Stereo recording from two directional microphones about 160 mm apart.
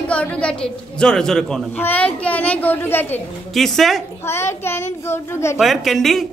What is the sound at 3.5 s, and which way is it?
Speech, centre (ahead or behind).